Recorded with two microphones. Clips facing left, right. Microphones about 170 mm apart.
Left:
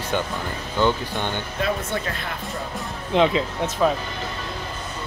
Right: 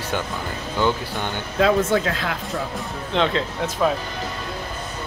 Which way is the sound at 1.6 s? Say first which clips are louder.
Right 9 dB; 90° right.